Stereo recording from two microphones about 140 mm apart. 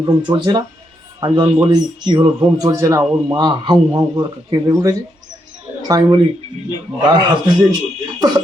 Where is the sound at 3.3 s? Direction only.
30° right (ahead or behind).